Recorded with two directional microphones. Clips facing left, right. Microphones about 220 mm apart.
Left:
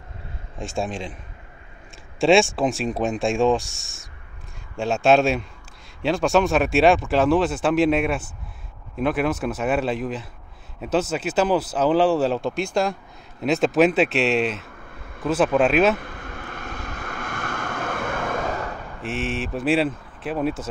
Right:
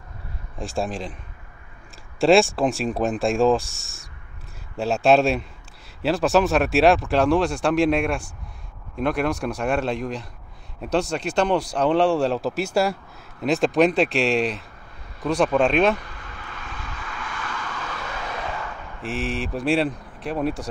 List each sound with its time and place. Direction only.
0.6 s speech: centre (ahead or behind)
2.1 s speech: centre (ahead or behind)
16.0 s vehicle: 50° left (ahead or behind)
19.0 s speech: centre (ahead or behind)